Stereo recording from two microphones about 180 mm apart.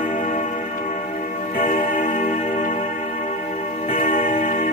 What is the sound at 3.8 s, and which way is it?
Music, 55° left (ahead or behind).